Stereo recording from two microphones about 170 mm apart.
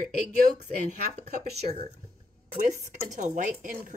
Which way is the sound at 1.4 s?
40° right (ahead or behind).